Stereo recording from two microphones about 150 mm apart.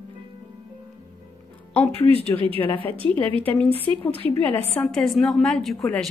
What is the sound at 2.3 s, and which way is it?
Speech, 35° right (ahead or behind).